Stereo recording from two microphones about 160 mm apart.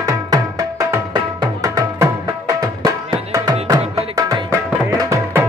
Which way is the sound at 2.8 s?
25° right (ahead or behind).